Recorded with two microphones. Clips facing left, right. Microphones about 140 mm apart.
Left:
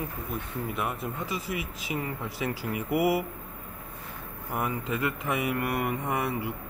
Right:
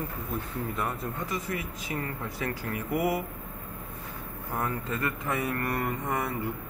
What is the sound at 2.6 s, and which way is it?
Speech, 15° left (ahead or behind).